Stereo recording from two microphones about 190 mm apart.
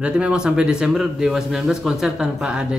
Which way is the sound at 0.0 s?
5° right (ahead or behind).